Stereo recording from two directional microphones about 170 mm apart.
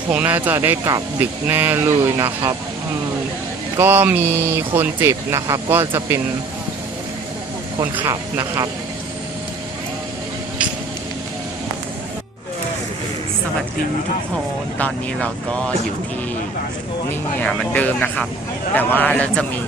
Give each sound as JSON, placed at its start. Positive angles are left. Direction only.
{"t": 0.1, "sound": "speech", "side_deg": -10}
{"t": 3.8, "sound": "speech", "side_deg": -15}
{"t": 7.9, "sound": "speech", "side_deg": -15}
{"t": 14.8, "sound": "speech", "side_deg": 5}
{"t": 17.1, "sound": "speech", "side_deg": 5}